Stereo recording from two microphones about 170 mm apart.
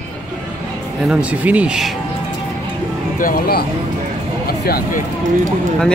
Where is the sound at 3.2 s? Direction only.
60° left (ahead or behind).